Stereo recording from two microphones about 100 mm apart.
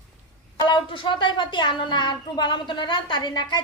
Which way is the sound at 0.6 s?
50° left (ahead or behind).